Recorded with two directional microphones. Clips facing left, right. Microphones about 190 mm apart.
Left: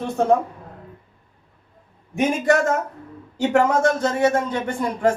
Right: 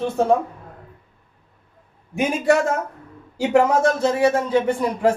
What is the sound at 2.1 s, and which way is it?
Speech, 5° right (ahead or behind).